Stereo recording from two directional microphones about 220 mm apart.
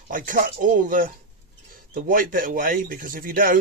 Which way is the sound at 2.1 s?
40° right (ahead or behind).